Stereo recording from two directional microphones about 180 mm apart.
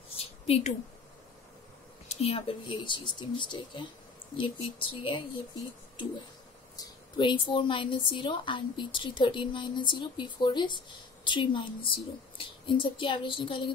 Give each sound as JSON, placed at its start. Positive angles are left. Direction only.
{"t": 0.2, "sound": "a sound", "side_deg": 35}
{"t": 2.0, "sound": "a woman's voice", "side_deg": 35}
{"t": 6.8, "sound": "a woman's voice", "side_deg": 25}